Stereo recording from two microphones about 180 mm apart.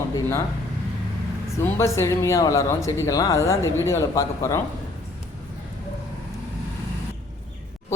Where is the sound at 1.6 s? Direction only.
15° left (ahead or behind).